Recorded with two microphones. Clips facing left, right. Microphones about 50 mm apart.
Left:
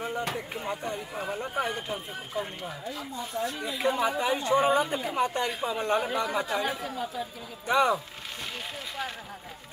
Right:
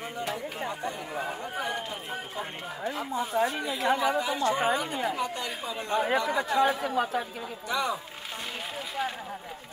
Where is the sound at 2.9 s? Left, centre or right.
Right.